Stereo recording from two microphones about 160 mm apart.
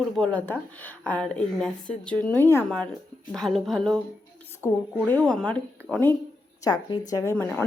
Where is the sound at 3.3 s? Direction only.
Centre (ahead or behind).